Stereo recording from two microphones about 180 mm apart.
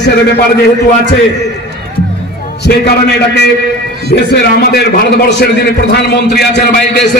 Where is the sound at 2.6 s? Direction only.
70° left (ahead or behind).